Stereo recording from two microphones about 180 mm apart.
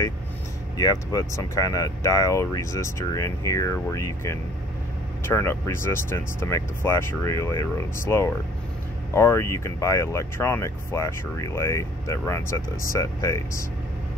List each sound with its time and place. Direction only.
0.7 s speech: 20° left (ahead or behind)